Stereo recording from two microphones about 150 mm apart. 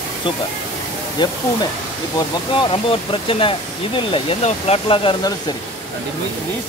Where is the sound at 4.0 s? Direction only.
35° left (ahead or behind).